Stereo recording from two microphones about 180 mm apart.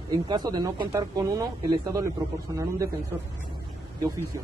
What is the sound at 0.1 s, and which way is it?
A man's voice, 20° right (ahead or behind).